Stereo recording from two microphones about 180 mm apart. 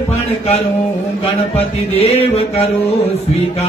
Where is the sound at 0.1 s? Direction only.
35° left (ahead or behind).